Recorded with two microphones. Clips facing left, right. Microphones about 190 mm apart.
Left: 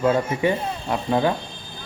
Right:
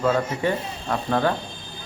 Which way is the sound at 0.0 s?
10° left (ahead or behind).